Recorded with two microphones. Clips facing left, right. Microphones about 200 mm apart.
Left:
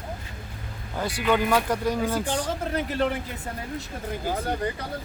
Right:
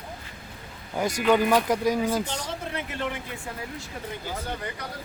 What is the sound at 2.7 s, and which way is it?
Speech, 35° left (ahead or behind).